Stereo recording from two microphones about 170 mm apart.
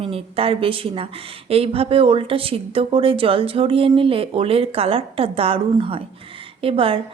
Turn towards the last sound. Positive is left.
turn(degrees=-30)  # may be behind; listen again after turning